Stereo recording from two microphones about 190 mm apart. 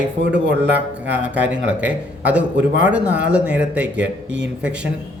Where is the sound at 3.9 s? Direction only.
65° right (ahead or behind).